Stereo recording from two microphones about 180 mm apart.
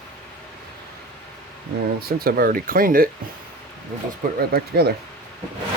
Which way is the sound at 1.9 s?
55° right (ahead or behind).